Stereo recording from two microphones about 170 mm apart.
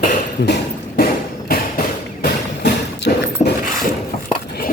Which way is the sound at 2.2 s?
85° left.